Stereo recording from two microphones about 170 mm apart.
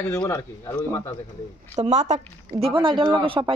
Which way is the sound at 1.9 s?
45° right (ahead or behind).